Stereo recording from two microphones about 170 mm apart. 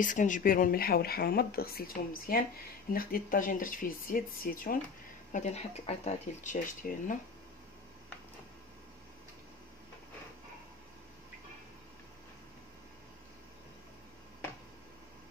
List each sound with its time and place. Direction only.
0.0 s speech: 50° left (ahead or behind)
5.3 s speech: 45° left (ahead or behind)